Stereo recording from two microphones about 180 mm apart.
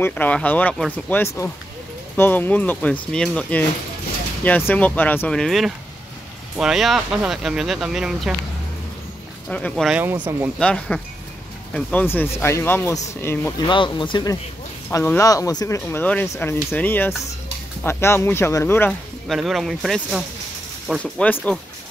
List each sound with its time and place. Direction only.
0.0 s speech: 10° left (ahead or behind)
9.5 s speech: 5° left (ahead or behind)
13.7 s speech: 25° left (ahead or behind)
19.2 s speech: centre (ahead or behind)